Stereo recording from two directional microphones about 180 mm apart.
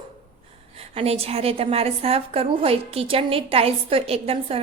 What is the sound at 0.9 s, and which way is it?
A woman's voice, 35° right (ahead or behind).